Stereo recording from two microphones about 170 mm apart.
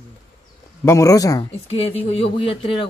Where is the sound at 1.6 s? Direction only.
35° left (ahead or behind).